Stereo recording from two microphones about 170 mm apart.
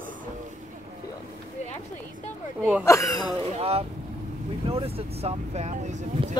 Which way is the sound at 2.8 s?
20° left (ahead or behind).